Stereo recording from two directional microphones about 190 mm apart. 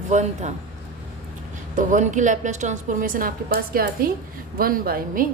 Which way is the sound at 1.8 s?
40° right (ahead or behind).